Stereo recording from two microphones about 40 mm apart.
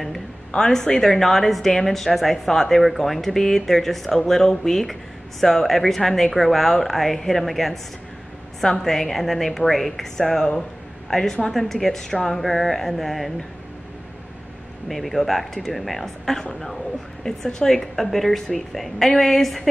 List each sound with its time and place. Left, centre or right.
0.6 s a woman's voice: centre
14.9 s a woman's voice: centre
17.2 s a woman's voice: centre